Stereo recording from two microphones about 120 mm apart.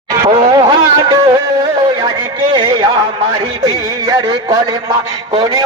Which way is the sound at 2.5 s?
40° right (ahead or behind).